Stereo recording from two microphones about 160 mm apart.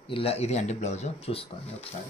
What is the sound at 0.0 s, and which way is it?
Speech, 35° left (ahead or behind).